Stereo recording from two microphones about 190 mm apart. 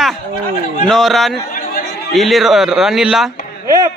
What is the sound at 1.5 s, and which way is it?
Chatter, 45° left (ahead or behind).